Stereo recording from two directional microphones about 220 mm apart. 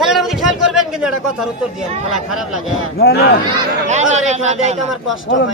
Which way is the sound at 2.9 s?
45° left (ahead or behind).